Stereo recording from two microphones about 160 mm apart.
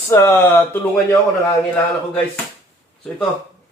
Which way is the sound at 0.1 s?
15° left (ahead or behind).